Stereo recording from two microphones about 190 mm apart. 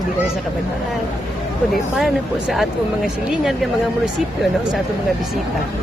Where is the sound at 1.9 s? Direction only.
Centre (ahead or behind).